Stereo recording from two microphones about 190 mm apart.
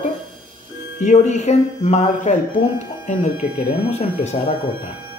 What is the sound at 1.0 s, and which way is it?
Speech, 40° left (ahead or behind).